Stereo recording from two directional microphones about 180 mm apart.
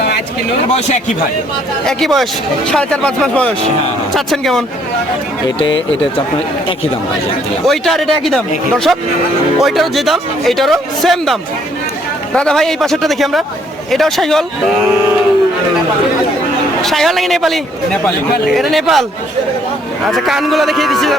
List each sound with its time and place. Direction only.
0.7 s speech: 40° left (ahead or behind)
1.9 s speech: centre (ahead or behind)
5.5 s speech: 25° left (ahead or behind)
7.7 s speech: centre (ahead or behind)
16.8 s speech: centre (ahead or behind)
20.1 s speech: centre (ahead or behind)